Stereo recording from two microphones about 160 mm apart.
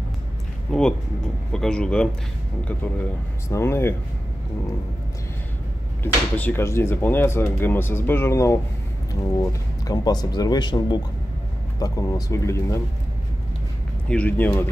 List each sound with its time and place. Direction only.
0.7 s speech: 5° left (ahead or behind)
6.3 s speech: 10° left (ahead or behind)
14.0 s speech: 10° left (ahead or behind)